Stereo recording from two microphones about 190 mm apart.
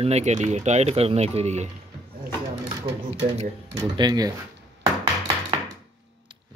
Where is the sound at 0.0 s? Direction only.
35° right (ahead or behind).